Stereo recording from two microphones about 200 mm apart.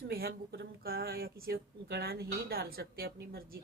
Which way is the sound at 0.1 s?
50° right (ahead or behind).